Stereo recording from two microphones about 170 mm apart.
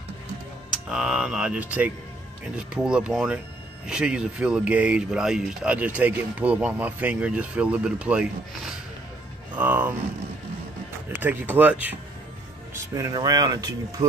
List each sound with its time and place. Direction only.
0.8 s speech: 5° right (ahead or behind)
11.1 s speech: 10° right (ahead or behind)